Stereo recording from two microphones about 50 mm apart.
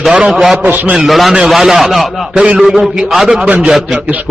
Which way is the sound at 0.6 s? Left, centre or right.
Right.